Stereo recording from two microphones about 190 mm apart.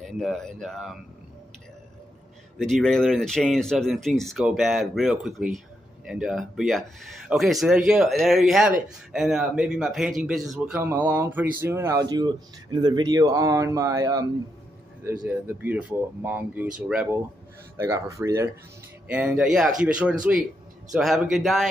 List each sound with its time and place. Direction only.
0.2 s speech: centre (ahead or behind)
2.6 s a man's voice: 5° left (ahead or behind)